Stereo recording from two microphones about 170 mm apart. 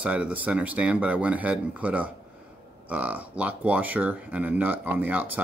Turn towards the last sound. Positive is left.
turn(degrees=-10)  # may be behind; listen again after turning